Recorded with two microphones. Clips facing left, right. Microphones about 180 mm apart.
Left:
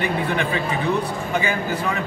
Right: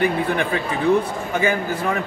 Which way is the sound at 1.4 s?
50° right (ahead or behind).